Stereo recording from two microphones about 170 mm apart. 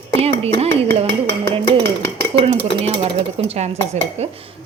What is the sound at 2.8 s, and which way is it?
Speech, 35° right (ahead or behind).